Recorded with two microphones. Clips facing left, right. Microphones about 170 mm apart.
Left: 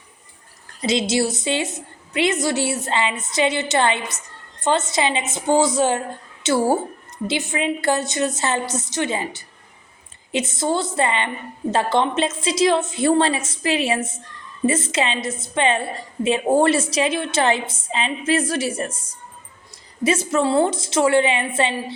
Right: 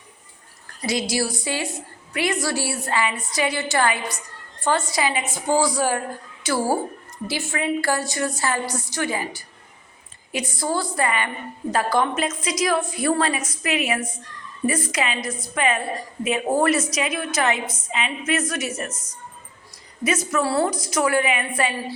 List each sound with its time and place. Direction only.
0.8 s a woman's voice: 25° left (ahead or behind)